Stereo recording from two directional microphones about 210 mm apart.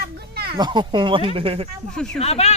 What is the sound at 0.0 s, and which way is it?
Children playing, 50° right (ahead or behind).